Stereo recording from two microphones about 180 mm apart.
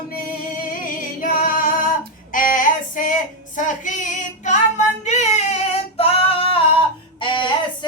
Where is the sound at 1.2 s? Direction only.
50° left (ahead or behind).